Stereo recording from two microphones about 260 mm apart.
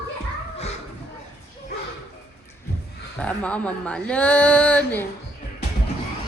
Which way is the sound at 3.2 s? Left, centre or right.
Centre.